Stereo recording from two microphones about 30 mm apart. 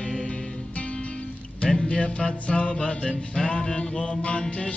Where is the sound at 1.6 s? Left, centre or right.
Left.